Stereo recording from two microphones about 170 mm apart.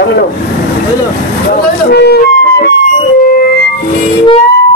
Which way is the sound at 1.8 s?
70° left (ahead or behind).